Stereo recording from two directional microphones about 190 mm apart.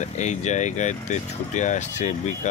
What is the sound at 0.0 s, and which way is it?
Speech, 40° left (ahead or behind).